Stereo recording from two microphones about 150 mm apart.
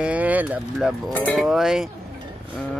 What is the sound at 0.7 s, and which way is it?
Speech, centre (ahead or behind).